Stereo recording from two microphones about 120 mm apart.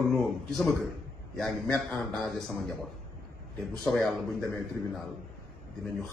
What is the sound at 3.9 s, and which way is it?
Speech, centre (ahead or behind).